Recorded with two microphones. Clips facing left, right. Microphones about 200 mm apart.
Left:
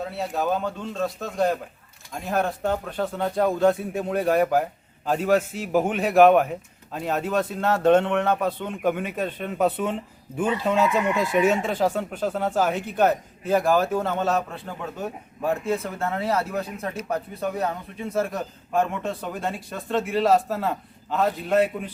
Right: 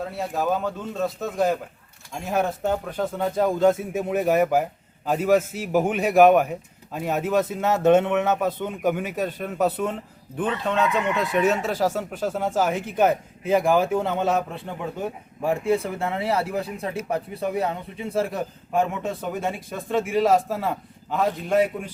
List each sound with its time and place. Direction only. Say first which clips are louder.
0.0 s speech: even; centre (ahead or behind)
8.7 s speech: even; 5° right (ahead or behind)
17.0 s speech: right 1 dB; 15° right (ahead or behind)